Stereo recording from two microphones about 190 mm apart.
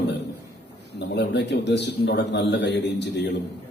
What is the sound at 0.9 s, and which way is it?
A man's voice, 65° left (ahead or behind).